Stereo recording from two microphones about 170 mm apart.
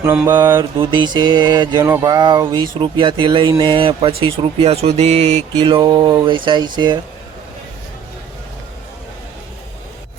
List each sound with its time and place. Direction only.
0.0 s mantra: 10° right (ahead or behind)
0.3 s speech: 25° right (ahead or behind)